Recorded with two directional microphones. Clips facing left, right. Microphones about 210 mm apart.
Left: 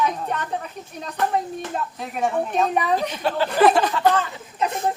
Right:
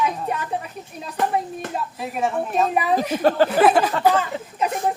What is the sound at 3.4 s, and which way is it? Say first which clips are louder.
Speech: even; 5° right (ahead or behind).